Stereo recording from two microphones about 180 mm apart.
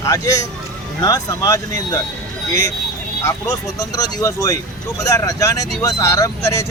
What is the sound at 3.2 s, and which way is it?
Speech, 20° left (ahead or behind).